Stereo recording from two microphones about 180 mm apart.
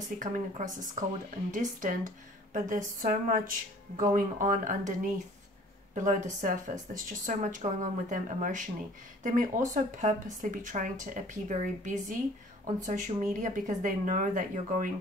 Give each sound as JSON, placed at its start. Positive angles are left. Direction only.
{"t": 0.2, "sound": "speech", "side_deg": -45}